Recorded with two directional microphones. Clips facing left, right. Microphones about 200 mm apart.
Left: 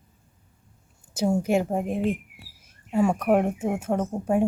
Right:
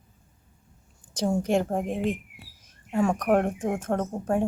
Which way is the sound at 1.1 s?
10° left (ahead or behind).